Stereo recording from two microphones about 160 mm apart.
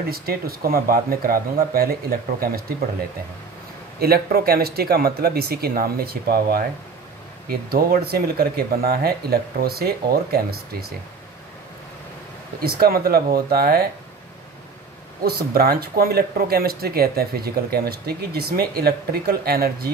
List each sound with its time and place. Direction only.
0.0 s speech: 70° right (ahead or behind)
4.0 s speech: 70° right (ahead or behind)
12.6 s speech: 70° right (ahead or behind)
15.2 s speech: 70° right (ahead or behind)